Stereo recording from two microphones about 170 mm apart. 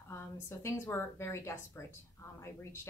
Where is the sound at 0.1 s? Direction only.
15° left (ahead or behind).